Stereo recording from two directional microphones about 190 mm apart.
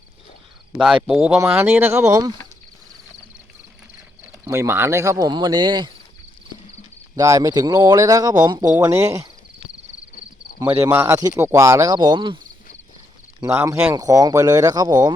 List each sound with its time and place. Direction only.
1.0 s speech: 5° right (ahead or behind)
4.4 s speech: 15° right (ahead or behind)
7.2 s speech: 20° right (ahead or behind)
10.7 s speech: 10° right (ahead or behind)
13.4 s speech: 15° right (ahead or behind)